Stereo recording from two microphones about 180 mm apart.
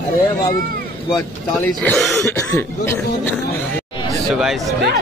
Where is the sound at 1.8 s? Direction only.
5° left (ahead or behind).